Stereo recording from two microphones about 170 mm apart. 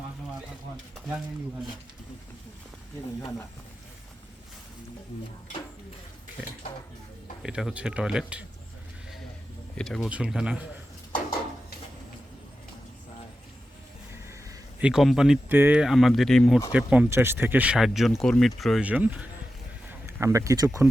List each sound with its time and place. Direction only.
7.4 s speech: 5° right (ahead or behind)
9.7 s speech: centre (ahead or behind)
14.8 s speech: 5° right (ahead or behind)